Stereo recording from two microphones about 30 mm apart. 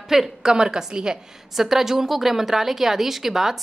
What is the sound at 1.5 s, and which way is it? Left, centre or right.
A woman's voice, centre.